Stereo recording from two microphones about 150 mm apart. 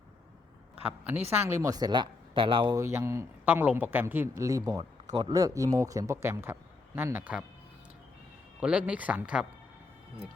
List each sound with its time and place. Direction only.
1.3 s speech: 15° right (ahead or behind)
1.6 s speech: 25° right (ahead or behind)
2.7 s speech: 20° right (ahead or behind)
8.6 s speech: 10° right (ahead or behind)